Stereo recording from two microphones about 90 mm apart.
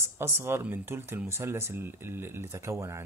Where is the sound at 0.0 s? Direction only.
30° right (ahead or behind).